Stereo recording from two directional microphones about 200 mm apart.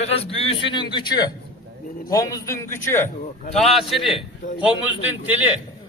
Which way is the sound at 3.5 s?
Centre (ahead or behind).